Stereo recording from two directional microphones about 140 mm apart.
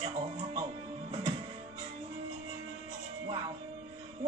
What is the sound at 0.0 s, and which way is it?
Music, 45° right (ahead or behind).